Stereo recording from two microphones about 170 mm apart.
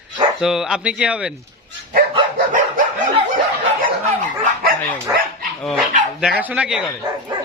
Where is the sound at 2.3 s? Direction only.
50° right (ahead or behind).